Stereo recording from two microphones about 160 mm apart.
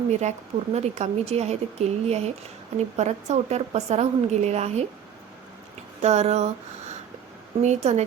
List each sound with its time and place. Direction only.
0.1 s speech: 45° right (ahead or behind)
6.0 s speech: 45° right (ahead or behind)